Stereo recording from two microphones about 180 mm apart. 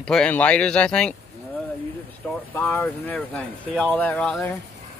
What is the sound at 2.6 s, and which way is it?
A man's voice, 10° left (ahead or behind).